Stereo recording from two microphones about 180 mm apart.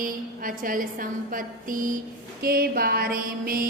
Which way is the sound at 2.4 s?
55° right (ahead or behind).